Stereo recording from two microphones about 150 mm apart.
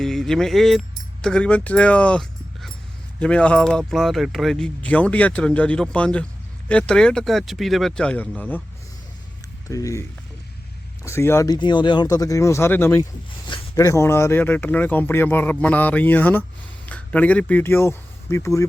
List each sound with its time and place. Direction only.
0.0 s speech: 5° left (ahead or behind)
9.6 s speech: 20° left (ahead or behind)
11.0 s speech: 15° left (ahead or behind)